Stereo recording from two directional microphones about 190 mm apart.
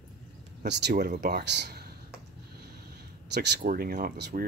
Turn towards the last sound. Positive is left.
turn(degrees=-55)  # may be behind; listen again after turning